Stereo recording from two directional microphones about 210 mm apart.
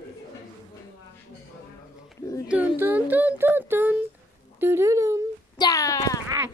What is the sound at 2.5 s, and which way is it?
Speech, 10° right (ahead or behind).